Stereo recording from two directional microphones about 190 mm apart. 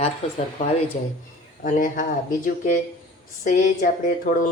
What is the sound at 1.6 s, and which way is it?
Speech, 45° left (ahead or behind).